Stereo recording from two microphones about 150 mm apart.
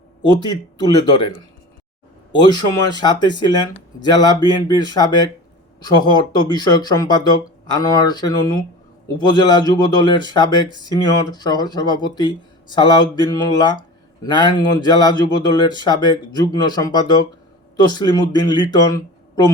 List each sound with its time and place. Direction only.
0.3 s speech: 30° left (ahead or behind)
2.3 s speech: 30° left (ahead or behind)
6.3 s speech: 25° left (ahead or behind)